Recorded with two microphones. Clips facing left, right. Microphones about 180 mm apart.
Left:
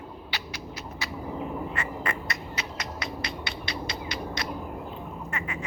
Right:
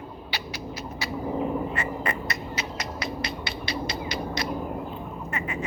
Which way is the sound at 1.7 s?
40° right (ahead or behind).